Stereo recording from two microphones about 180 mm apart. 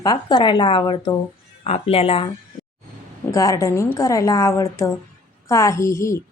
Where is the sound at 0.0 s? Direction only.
20° left (ahead or behind).